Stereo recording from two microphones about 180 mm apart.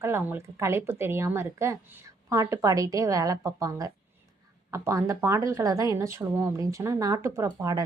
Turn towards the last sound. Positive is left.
turn(degrees=-20)  # may be behind; listen again after turning